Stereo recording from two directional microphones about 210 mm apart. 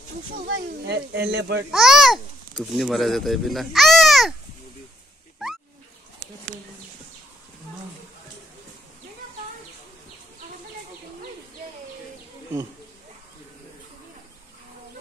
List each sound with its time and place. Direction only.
0.5 s speech: 50° right (ahead or behind)
1.7 s a child's voice: centre (ahead or behind)
5.4 s a sound: centre (ahead or behind)